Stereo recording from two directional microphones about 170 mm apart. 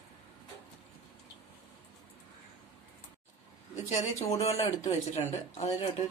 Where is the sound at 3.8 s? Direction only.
40° left (ahead or behind).